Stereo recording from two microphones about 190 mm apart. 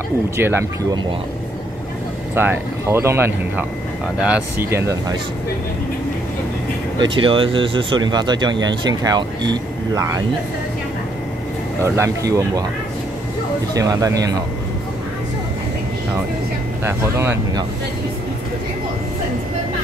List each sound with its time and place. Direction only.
0.4 s speech: 10° right (ahead or behind)
2.3 s speech: 10° right (ahead or behind)
7.0 s speech: 25° right (ahead or behind)
11.8 s speech: 15° right (ahead or behind)
13.7 s speech: 20° right (ahead or behind)
16.8 s speech: 15° right (ahead or behind)